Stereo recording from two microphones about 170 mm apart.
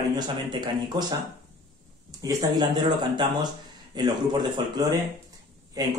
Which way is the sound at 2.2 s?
20° right (ahead or behind).